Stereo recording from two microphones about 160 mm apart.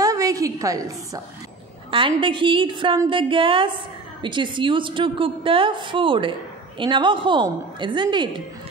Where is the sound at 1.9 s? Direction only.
35° right (ahead or behind).